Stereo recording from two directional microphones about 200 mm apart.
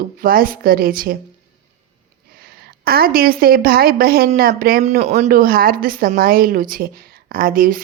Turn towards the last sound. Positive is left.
turn(degrees=-45)  # may be behind; listen again after turning